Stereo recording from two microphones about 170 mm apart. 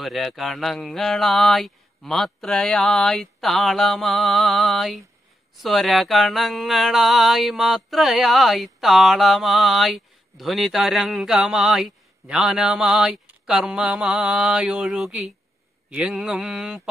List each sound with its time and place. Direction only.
0.0 s mantra: centre (ahead or behind)